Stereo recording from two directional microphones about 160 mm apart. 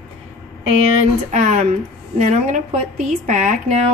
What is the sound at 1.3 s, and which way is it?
Speech, 50° right (ahead or behind).